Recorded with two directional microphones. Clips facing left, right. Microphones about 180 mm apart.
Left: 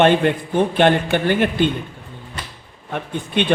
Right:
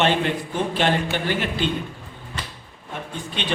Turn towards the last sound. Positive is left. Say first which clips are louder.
# left 9 dB
turn(degrees=55)  # may be behind; listen again after turning